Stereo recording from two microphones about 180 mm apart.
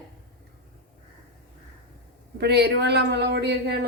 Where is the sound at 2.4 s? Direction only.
65° right (ahead or behind).